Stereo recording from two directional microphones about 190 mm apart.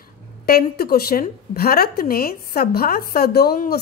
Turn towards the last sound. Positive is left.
turn(degrees=50)  # may be behind; listen again after turning